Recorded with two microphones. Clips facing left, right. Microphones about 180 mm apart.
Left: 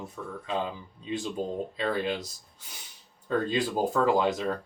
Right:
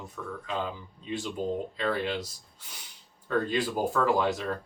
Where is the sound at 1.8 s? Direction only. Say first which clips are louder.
Left 4 dB; 20° left (ahead or behind).